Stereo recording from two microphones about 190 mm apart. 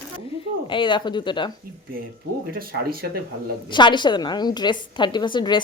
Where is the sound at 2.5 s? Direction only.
50° right (ahead or behind).